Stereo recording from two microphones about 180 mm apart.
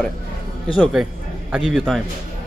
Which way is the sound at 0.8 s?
5° right (ahead or behind).